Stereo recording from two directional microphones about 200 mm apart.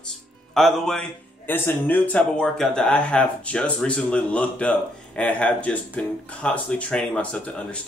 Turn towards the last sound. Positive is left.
turn(degrees=5)  # may be behind; listen again after turning